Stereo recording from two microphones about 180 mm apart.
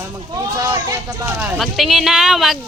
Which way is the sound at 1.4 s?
Centre (ahead or behind).